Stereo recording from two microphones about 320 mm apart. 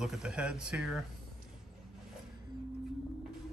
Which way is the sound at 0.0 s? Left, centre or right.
Centre.